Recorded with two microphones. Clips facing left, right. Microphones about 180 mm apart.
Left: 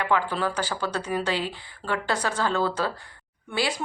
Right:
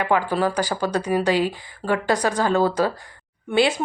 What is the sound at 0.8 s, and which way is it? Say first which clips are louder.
Speech: right 6 dB; 15° right (ahead or behind).